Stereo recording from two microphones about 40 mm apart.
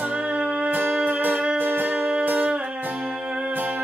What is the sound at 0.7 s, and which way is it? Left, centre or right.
Music, right.